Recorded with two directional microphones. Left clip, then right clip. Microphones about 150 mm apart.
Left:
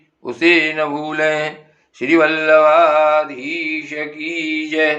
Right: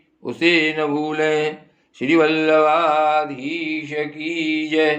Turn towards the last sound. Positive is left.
turn(degrees=-45)  # may be behind; listen again after turning